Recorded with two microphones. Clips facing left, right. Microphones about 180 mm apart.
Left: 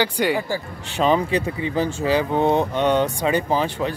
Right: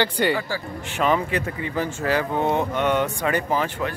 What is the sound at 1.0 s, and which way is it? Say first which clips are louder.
Speech: left 3 dB; 25° left (ahead or behind).